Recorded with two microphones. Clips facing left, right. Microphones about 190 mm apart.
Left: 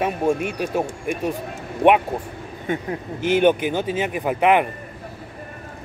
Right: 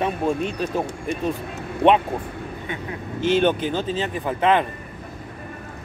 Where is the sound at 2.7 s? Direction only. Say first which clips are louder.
Left 9 dB; 45° left (ahead or behind).